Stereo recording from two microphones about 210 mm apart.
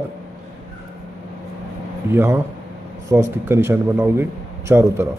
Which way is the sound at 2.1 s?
10° right (ahead or behind).